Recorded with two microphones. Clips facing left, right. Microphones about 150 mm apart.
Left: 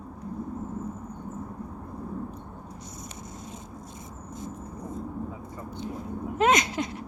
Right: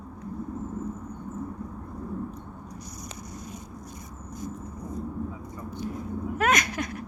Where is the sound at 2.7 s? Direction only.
25° left (ahead or behind).